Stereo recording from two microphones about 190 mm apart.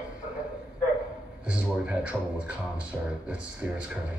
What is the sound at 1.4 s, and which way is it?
Speech, 5° right (ahead or behind).